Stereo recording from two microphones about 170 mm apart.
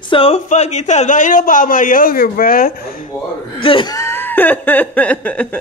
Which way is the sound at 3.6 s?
30° left (ahead or behind).